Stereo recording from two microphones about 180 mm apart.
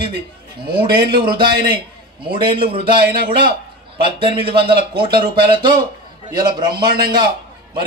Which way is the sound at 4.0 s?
30° right (ahead or behind).